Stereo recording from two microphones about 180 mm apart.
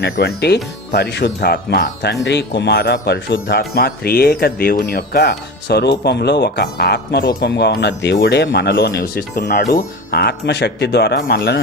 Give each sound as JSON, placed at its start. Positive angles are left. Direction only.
{"t": 0.0, "sound": "speech", "side_deg": 65}